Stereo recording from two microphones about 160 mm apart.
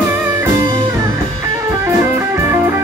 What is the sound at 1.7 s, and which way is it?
Music, 15° right (ahead or behind).